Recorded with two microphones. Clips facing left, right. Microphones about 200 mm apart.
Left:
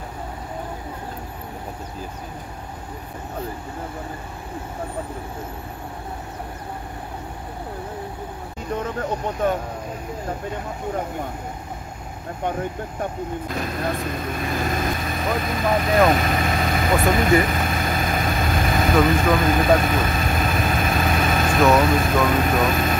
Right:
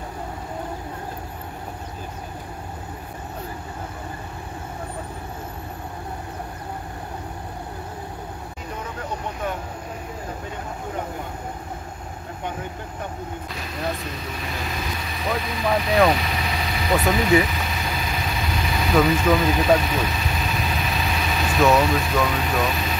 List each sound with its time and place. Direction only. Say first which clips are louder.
13.6 s speech: left 3 dB; 50° left (ahead or behind)
16.1 s vehicle: left 3 dB; 50° left (ahead or behind)
19.0 s speech: left 1 dB; 50° left (ahead or behind)
19.4 s vehicle: left 1 dB; 50° left (ahead or behind)
21.6 s speech: left 1 dB; 50° left (ahead or behind)